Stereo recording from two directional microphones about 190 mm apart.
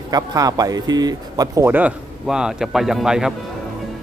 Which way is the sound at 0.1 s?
20° right (ahead or behind).